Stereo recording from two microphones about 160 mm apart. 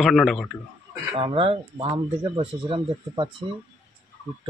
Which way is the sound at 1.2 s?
30° right (ahead or behind).